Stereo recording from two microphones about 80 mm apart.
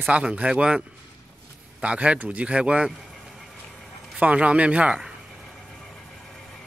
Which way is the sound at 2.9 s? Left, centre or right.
Centre.